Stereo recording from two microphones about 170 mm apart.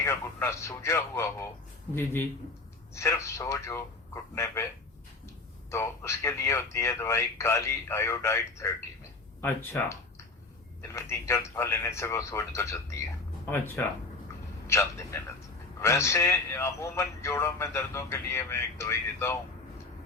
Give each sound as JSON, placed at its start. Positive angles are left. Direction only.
{"t": 0.0, "sound": "speech", "side_deg": 15}
{"t": 2.9, "sound": "speech", "side_deg": 15}
{"t": 5.7, "sound": "speech", "side_deg": 15}
{"t": 14.7, "sound": "speech", "side_deg": 15}